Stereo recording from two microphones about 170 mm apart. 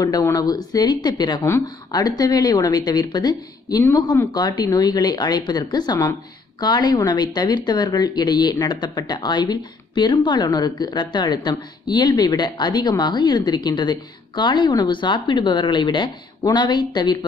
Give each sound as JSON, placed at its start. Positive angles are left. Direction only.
{"t": 0.0, "sound": "speech", "side_deg": 20}